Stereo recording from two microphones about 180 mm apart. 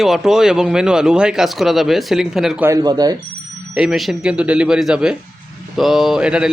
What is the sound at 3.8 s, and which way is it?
Speech, centre (ahead or behind).